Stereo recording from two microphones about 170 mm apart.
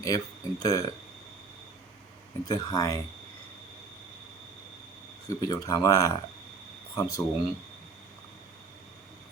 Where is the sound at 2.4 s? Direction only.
20° left (ahead or behind).